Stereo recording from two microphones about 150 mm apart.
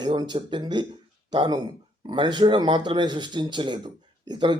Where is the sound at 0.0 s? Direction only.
30° right (ahead or behind).